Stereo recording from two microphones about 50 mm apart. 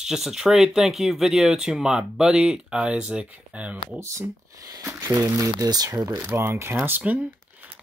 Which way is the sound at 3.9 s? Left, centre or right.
Right.